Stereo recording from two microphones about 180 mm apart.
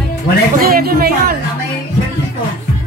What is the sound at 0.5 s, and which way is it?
Speech, 55° right (ahead or behind).